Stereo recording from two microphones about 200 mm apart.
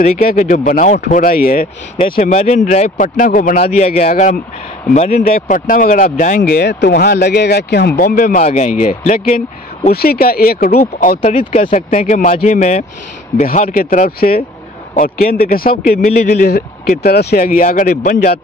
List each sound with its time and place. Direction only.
0.0 s speech: 40° left (ahead or behind)
3.6 s speech: 30° left (ahead or behind)
5.2 s speech: 45° left (ahead or behind)
11.1 s speech: 30° left (ahead or behind); by 17.4 s 55° left (ahead or behind)
17.4 s speech: 40° left (ahead or behind)